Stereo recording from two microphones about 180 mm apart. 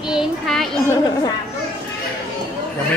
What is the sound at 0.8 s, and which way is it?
Chatter, 15° left (ahead or behind).